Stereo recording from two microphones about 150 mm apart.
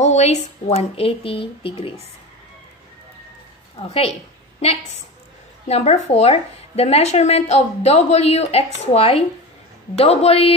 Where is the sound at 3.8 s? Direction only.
40° left (ahead or behind).